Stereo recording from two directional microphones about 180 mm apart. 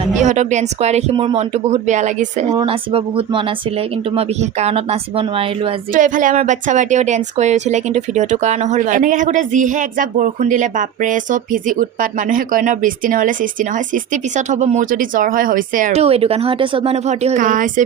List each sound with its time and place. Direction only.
0.2 s speech: 40° right (ahead or behind)
2.6 s speech: 30° right (ahead or behind)
5.9 s a woman's voice: 45° right (ahead or behind)
17.3 s a woman's voice: 45° right (ahead or behind)